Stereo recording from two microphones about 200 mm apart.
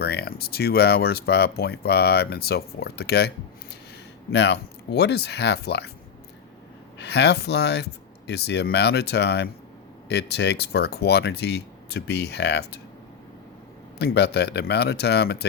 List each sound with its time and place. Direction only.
0.0 s speech: 50° left (ahead or behind)
7.0 s speech: 55° left (ahead or behind)
14.0 s speech: 55° left (ahead or behind)